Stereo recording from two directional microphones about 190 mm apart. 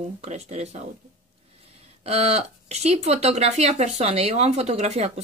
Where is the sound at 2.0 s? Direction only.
30° right (ahead or behind).